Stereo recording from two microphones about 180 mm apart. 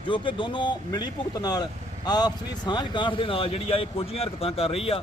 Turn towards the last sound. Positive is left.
turn(degrees=30)  # may be behind; listen again after turning